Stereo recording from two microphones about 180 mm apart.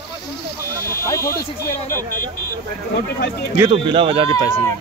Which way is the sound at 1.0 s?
15° left (ahead or behind).